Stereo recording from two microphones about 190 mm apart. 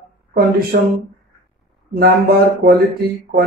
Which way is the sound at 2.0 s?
55° right (ahead or behind).